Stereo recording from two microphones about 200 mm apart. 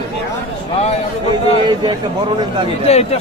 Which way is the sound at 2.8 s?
30° left (ahead or behind).